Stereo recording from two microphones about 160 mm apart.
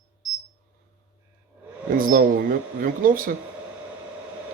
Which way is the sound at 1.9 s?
60° right (ahead or behind).